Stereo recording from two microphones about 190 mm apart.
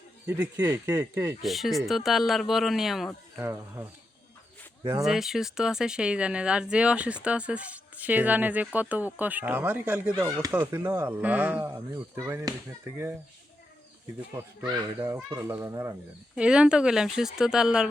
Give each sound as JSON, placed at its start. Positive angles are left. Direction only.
{"t": 0.3, "sound": "speech", "side_deg": -10}
{"t": 1.4, "sound": "speech", "side_deg": 0}
{"t": 3.3, "sound": "speech", "side_deg": -15}
{"t": 5.0, "sound": "speech", "side_deg": 0}
{"t": 14.7, "sound": "speech", "side_deg": -15}
{"t": 16.3, "sound": "speech", "side_deg": -5}